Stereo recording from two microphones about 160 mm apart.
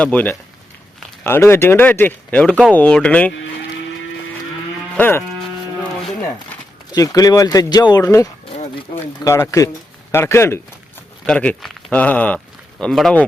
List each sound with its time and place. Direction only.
0.0 s speech: 10° left (ahead or behind)
4.9 s speech: 10° left (ahead or behind)
6.9 s speech: 20° left (ahead or behind); by 13.2 s centre (ahead or behind)